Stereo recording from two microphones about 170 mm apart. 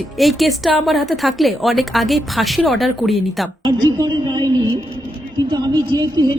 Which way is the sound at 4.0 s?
25° right (ahead or behind).